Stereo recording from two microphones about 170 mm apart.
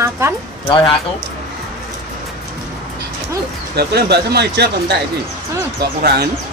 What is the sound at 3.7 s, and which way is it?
Speech, 70° right (ahead or behind).